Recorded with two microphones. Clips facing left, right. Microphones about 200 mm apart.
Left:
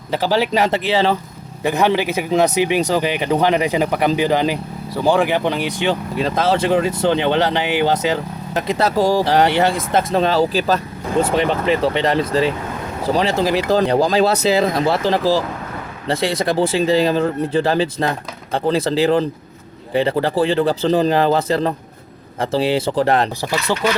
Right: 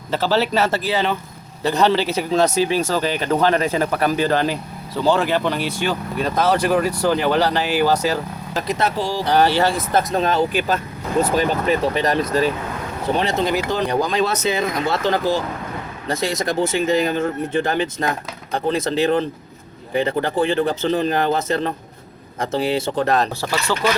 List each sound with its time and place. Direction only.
0.1 s speech: 15° left (ahead or behind); by 1.2 s 30° left (ahead or behind)
1.6 s speech: 15° left (ahead or behind)
9.0 s speech: 45° left (ahead or behind)
9.2 s speech: 20° left (ahead or behind)